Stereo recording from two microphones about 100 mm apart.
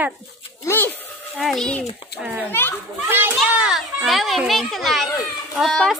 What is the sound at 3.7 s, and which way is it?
A child's voice, centre (ahead or behind).